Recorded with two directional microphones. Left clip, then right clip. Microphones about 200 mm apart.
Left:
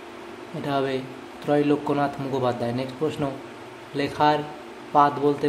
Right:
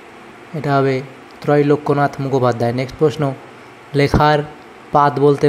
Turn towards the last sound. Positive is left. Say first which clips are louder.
# right 7 dB
turn(degrees=-35)  # may be behind; listen again after turning